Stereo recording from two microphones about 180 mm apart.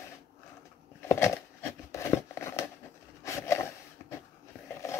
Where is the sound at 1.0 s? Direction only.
15° left (ahead or behind).